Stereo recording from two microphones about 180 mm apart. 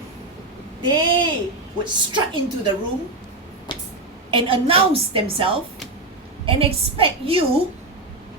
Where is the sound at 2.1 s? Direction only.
25° right (ahead or behind).